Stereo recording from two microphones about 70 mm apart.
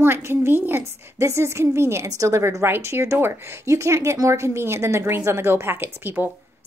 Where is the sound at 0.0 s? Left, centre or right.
Right.